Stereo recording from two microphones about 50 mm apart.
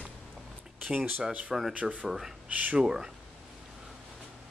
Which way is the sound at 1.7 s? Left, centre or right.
Right.